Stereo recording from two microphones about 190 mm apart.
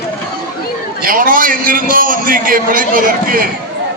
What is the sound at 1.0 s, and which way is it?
A man's voice, 45° right (ahead or behind).